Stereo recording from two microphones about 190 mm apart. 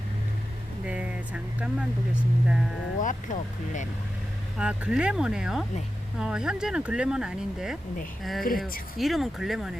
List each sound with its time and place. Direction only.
0.9 s speech: 5° right (ahead or behind)
3.0 s speech: 40° left (ahead or behind)
4.5 s speech: 5° right (ahead or behind)
8.4 s speech: 50° left (ahead or behind)
9.0 s speech: centre (ahead or behind)